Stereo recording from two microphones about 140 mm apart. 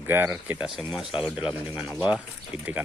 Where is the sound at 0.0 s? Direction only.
15° right (ahead or behind).